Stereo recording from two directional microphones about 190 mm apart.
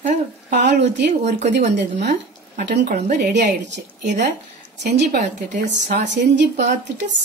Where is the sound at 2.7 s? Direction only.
60° right (ahead or behind).